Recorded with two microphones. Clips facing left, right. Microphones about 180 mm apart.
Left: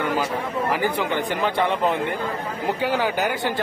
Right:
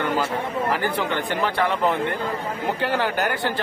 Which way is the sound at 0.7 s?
15° left (ahead or behind).